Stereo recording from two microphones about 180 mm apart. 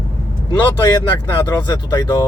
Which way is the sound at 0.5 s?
25° left (ahead or behind).